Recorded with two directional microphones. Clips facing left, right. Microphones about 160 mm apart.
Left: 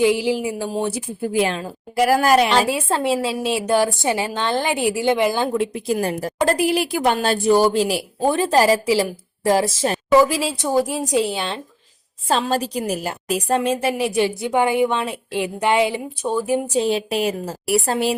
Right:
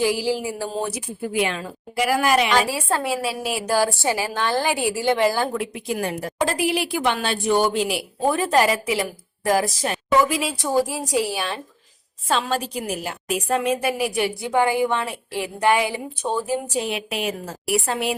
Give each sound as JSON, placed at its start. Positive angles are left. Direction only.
{"t": 0.0, "sound": "a woman's voice", "side_deg": 20}
{"t": 0.9, "sound": "a woman's voice", "side_deg": 30}
{"t": 5.7, "sound": "a woman's voice", "side_deg": 35}
{"t": 12.3, "sound": "a woman's voice", "side_deg": 40}
{"t": 16.2, "sound": "speech", "side_deg": 10}
{"t": 16.7, "sound": "a woman's voice", "side_deg": 30}